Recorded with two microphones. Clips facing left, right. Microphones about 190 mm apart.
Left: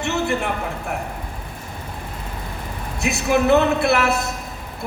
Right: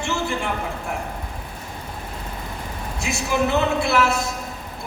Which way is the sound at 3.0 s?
60° left (ahead or behind).